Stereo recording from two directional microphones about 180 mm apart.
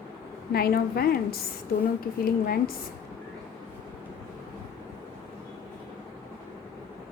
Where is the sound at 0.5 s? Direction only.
55° left (ahead or behind).